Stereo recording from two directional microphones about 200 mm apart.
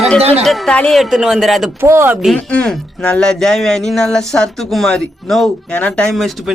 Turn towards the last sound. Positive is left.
turn(degrees=0)  # may be behind; listen again after turning